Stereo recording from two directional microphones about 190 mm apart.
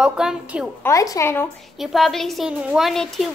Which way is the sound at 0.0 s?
5° right (ahead or behind).